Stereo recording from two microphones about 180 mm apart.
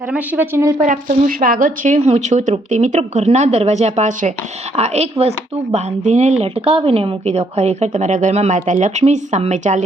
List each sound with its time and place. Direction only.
0.1 s speech: 10° right (ahead or behind)
0.8 s a woman's voice: 45° right (ahead or behind)